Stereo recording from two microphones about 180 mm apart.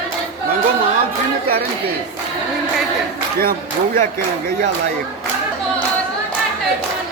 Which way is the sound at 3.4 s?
55° right (ahead or behind).